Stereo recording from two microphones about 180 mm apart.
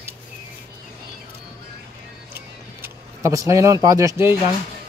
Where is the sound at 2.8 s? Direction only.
15° right (ahead or behind).